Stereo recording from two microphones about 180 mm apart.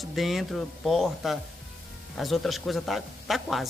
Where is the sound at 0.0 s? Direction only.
Centre (ahead or behind).